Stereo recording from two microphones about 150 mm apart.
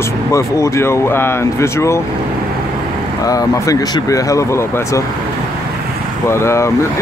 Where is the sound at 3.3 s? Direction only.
25° left (ahead or behind).